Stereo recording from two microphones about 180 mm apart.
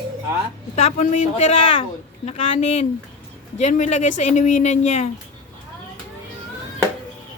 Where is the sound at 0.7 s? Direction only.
40° left (ahead or behind).